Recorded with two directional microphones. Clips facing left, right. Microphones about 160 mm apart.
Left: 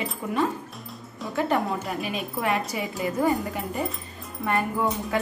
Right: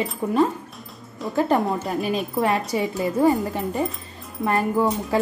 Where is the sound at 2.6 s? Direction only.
35° right (ahead or behind).